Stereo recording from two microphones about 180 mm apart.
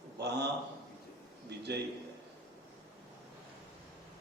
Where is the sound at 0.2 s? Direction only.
70° right (ahead or behind).